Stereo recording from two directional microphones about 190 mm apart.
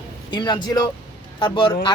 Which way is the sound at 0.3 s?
20° left (ahead or behind).